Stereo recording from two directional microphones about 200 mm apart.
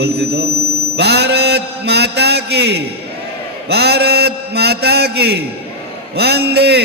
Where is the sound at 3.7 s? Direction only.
55° right (ahead or behind).